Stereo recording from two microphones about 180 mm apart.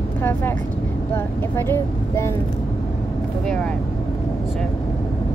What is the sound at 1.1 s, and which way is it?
A woman's voice, 10° left (ahead or behind).